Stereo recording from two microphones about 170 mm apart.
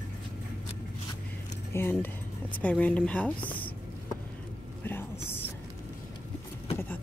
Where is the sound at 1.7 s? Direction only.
15° left (ahead or behind).